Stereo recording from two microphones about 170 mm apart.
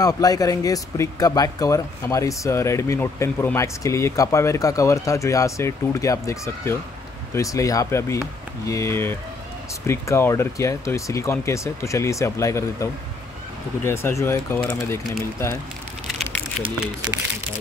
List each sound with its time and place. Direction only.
0.0 s speech: 20° left (ahead or behind)